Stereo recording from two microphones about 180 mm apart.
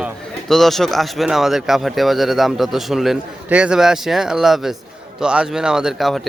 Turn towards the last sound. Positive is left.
turn(degrees=0)  # may be behind; listen again after turning